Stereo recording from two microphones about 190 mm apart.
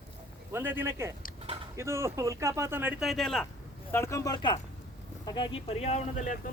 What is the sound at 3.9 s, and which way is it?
Speech, 15° left (ahead or behind).